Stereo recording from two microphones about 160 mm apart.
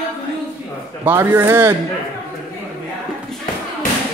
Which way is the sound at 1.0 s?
15° right (ahead or behind).